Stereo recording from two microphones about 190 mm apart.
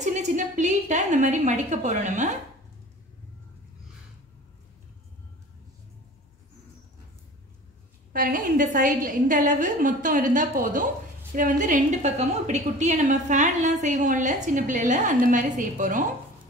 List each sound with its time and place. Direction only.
0.0 s a woman's voice: 40° right (ahead or behind)
8.1 s a woman's voice: 45° right (ahead or behind)